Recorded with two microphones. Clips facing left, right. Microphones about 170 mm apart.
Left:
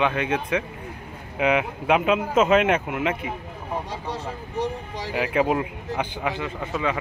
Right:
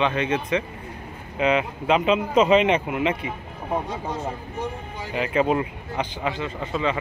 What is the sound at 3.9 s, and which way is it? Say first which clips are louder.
Speech: right 2 dB; 35° left (ahead or behind).